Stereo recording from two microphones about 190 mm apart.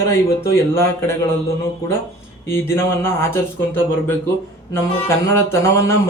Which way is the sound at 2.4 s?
15° left (ahead or behind).